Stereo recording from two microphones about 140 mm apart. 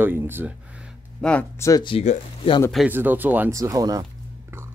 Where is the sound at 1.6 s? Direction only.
25° left (ahead or behind).